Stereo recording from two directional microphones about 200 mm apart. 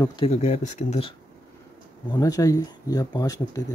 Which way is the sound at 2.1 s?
20° left (ahead or behind).